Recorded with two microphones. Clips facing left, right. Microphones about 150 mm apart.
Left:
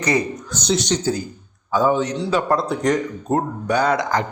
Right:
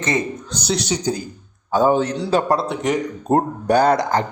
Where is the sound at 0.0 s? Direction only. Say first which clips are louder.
Left 1 dB; 25° right (ahead or behind).